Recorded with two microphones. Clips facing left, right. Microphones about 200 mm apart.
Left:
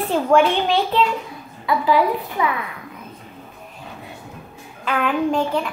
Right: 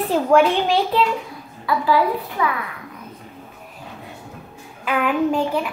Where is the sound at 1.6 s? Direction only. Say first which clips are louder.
Left 1 dB; 20° left (ahead or behind).